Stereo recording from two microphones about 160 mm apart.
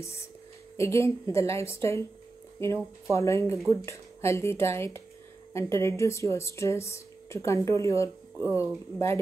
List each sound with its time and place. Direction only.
0.0 s speech: 15° left (ahead or behind)